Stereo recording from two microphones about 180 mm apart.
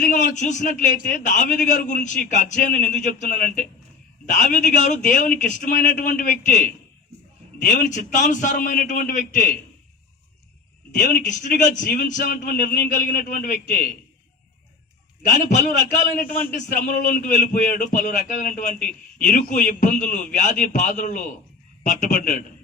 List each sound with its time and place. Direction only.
0.0 s a man's voice: 45° left (ahead or behind)
10.9 s a man's voice: 45° left (ahead or behind)
15.4 s a man's voice: 45° left (ahead or behind)